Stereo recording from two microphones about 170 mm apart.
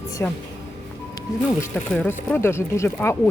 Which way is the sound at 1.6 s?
10° left (ahead or behind).